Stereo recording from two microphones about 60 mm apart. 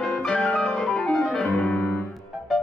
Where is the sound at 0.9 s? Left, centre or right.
Centre.